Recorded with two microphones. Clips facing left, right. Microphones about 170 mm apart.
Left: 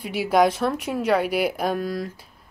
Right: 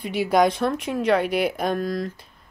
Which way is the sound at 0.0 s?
5° left (ahead or behind).